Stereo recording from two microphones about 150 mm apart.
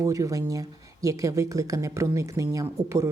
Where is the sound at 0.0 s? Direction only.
20° right (ahead or behind).